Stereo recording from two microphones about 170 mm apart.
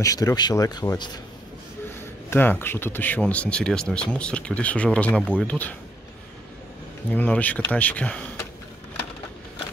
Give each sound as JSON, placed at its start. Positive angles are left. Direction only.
{"t": 0.0, "sound": "speech", "side_deg": 20}
{"t": 2.2, "sound": "speech", "side_deg": 10}
{"t": 7.1, "sound": "speech", "side_deg": 10}